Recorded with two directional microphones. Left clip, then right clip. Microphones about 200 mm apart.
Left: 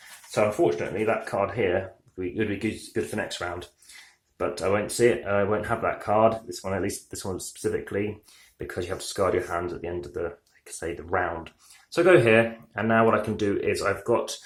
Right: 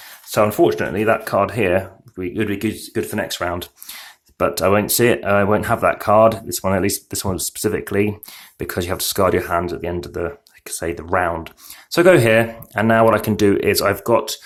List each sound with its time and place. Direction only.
0.3 s speech: 50° right (ahead or behind); by 3.5 s 35° right (ahead or behind)
4.4 s speech: 45° right (ahead or behind)